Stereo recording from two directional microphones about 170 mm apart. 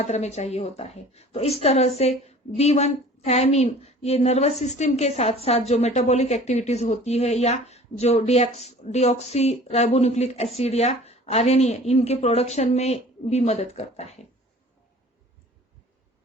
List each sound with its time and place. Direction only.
0.0 s a woman's voice: 40° left (ahead or behind)